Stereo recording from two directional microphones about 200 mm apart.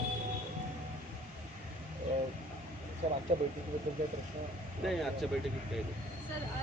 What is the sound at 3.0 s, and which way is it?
Speech, 35° right (ahead or behind).